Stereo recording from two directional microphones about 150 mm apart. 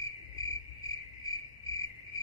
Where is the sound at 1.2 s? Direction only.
20° left (ahead or behind).